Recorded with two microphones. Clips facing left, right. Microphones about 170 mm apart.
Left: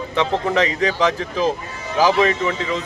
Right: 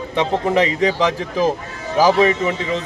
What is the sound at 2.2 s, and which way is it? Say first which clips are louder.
Speech: right 2 dB; 15° right (ahead or behind).